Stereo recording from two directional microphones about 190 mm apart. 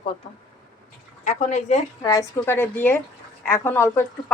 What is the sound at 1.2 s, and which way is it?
Speech, 40° left (ahead or behind).